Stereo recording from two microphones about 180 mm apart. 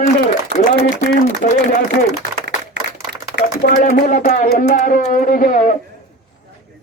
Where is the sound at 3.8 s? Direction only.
45° left (ahead or behind).